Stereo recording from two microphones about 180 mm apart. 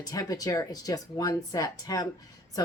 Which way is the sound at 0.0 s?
20° left (ahead or behind).